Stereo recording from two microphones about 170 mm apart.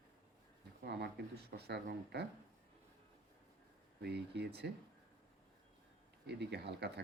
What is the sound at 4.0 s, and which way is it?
Speech, 75° right (ahead or behind).